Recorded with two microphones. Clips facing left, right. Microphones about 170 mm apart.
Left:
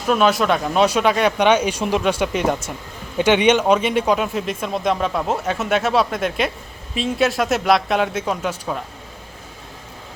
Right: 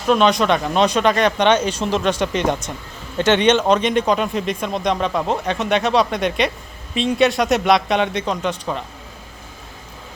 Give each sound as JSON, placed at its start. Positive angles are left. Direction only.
{"t": 0.1, "sound": "speech", "side_deg": 5}